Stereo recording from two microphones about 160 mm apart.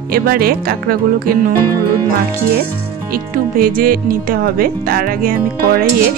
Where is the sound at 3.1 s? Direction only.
65° right (ahead or behind).